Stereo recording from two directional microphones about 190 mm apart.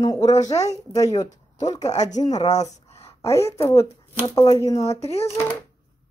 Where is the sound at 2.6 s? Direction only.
35° left (ahead or behind).